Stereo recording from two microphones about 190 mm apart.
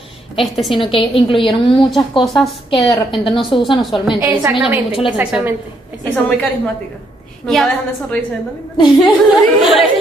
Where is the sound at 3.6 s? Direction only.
Centre (ahead or behind).